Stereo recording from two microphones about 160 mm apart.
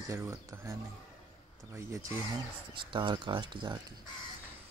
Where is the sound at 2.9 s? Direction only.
30° right (ahead or behind).